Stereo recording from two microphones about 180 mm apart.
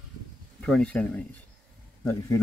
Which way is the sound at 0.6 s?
5° left (ahead or behind).